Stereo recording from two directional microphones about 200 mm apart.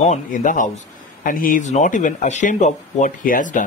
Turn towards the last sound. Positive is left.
turn(degrees=40)  # may be behind; listen again after turning